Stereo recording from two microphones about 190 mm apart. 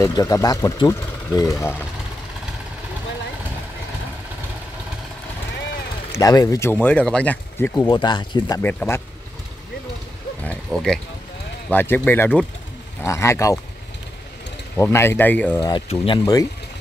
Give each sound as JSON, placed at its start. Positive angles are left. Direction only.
{"t": 0.0, "sound": "speech", "side_deg": 15}
{"t": 6.1, "sound": "speech", "side_deg": 15}
{"t": 8.5, "sound": "speech", "side_deg": 10}
{"t": 10.4, "sound": "speech", "side_deg": 5}
{"t": 14.8, "sound": "speech", "side_deg": 15}
{"t": 15.6, "sound": "speech", "side_deg": 25}